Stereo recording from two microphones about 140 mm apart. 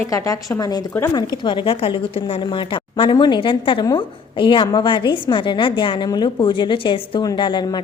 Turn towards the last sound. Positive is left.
turn(degrees=35)  # may be behind; listen again after turning